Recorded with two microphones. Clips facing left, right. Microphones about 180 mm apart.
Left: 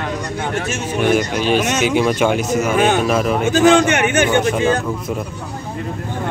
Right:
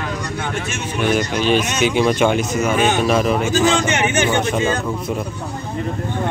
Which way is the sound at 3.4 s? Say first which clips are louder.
Left 5 dB; 60° left (ahead or behind).